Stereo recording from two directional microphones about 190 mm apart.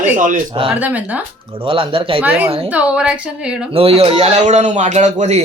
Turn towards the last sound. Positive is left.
turn(degrees=-35)  # may be behind; listen again after turning